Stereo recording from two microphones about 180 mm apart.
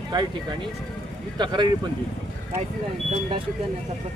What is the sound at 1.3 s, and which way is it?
Speech, 25° right (ahead or behind).